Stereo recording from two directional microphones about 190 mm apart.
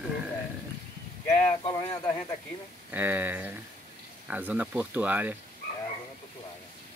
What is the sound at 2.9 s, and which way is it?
Speech, 10° right (ahead or behind).